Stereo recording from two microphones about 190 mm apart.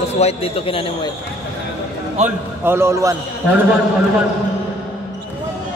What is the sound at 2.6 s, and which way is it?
Speech, 15° right (ahead or behind).